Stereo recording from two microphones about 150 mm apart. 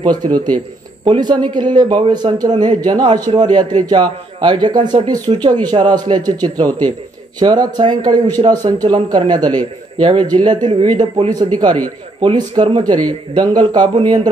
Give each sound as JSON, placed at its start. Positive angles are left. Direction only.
{"t": 0.0, "sound": "a man's voice", "side_deg": -30}